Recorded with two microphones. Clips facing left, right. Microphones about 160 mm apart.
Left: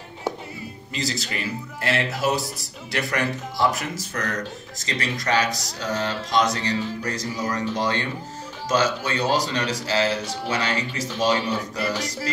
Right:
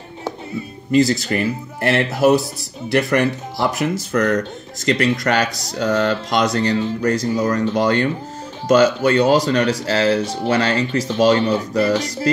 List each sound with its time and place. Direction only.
0.9 s speech: 55° right (ahead or behind)